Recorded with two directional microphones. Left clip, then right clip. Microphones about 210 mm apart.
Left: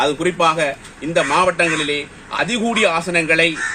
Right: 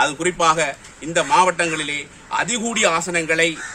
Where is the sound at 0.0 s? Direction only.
20° right (ahead or behind).